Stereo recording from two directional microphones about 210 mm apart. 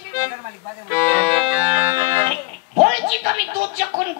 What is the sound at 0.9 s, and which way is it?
Speech, 10° left (ahead or behind).